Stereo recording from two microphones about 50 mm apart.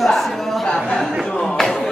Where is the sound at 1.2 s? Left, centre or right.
Centre.